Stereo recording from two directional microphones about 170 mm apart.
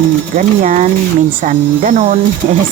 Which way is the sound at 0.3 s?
45° right (ahead or behind).